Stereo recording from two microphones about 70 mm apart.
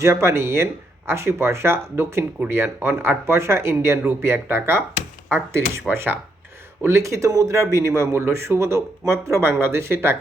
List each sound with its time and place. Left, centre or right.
0.0 s speech: right
6.8 s speech: right